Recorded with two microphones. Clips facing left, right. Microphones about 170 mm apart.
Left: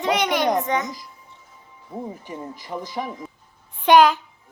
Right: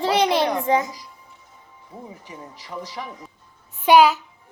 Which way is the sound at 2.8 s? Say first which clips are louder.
Left 3 dB; 50° left (ahead or behind).